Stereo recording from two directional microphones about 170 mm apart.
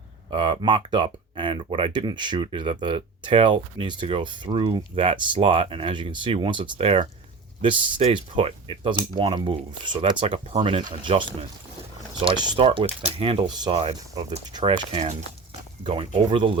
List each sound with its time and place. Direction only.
0.3 s speech: 25° right (ahead or behind)